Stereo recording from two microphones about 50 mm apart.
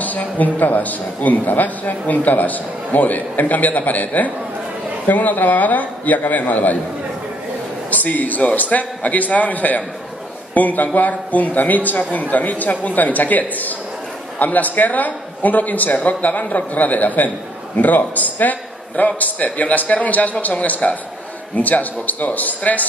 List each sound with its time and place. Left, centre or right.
0.0 s a man's voice: left
7.9 s a man's voice: left